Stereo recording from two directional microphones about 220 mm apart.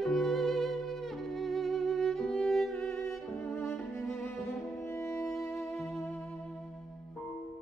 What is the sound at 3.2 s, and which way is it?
Music, 10° left (ahead or behind).